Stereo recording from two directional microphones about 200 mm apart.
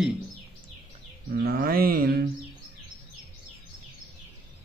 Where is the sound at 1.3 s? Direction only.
50° right (ahead or behind).